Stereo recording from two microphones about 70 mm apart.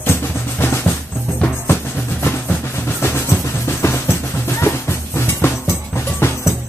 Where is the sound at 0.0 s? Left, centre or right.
Left.